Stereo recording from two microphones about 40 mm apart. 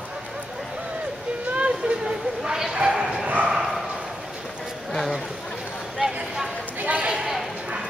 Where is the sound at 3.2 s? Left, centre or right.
Right.